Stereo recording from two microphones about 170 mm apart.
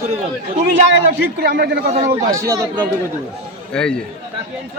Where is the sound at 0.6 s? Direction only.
90° right.